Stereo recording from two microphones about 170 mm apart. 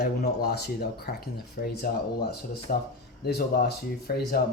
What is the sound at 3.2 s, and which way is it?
Speech, 70° left (ahead or behind).